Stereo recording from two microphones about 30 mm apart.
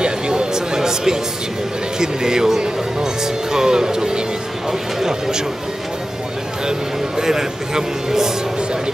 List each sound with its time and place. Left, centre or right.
0.0 s music: right
2.0 s speech: right
6.6 s speech: right